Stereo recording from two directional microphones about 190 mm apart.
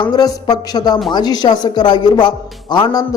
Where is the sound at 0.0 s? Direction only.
20° left (ahead or behind).